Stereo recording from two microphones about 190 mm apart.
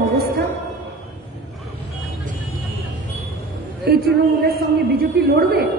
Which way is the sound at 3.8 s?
55° right (ahead or behind).